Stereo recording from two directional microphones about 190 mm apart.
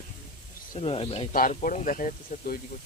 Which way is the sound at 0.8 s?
30° left (ahead or behind).